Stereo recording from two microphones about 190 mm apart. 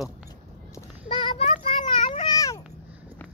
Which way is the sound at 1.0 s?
25° left (ahead or behind).